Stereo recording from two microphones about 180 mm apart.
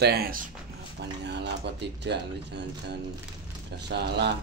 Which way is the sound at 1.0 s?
70° right (ahead or behind).